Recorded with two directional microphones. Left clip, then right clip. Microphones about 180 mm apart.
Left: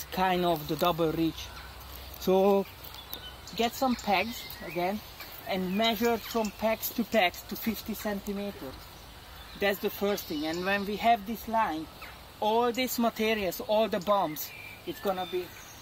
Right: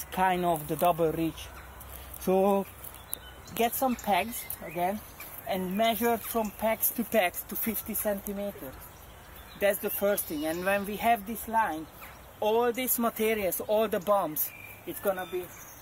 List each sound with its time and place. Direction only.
0.1 s speech: 15° left (ahead or behind)
0.7 s speech: 5° right (ahead or behind)
2.2 s speech: 5° left (ahead or behind)
9.6 s speech: centre (ahead or behind)